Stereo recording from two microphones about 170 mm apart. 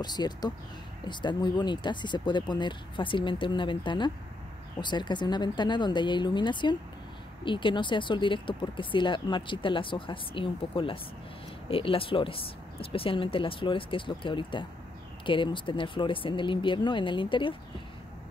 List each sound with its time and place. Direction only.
0.0 s speech: 25° left (ahead or behind)